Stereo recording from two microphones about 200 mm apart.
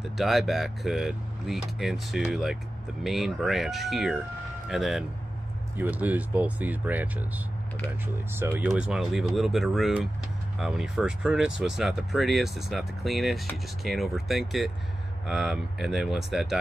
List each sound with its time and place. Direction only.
0.0 s speech: centre (ahead or behind)
8.3 s speech: 10° right (ahead or behind)